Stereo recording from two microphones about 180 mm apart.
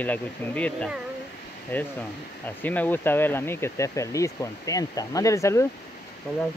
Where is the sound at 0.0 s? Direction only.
10° left (ahead or behind).